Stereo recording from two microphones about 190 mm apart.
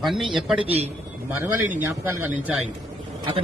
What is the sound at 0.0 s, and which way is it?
A man's voice, centre (ahead or behind).